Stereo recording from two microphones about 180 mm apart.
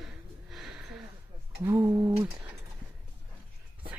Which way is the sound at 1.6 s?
15° right (ahead or behind).